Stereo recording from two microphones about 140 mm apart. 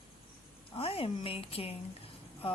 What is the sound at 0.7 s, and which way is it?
Speech, 40° left (ahead or behind).